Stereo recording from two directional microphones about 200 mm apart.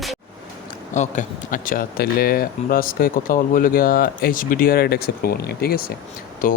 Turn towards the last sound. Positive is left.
turn(degrees=40)  # may be behind; listen again after turning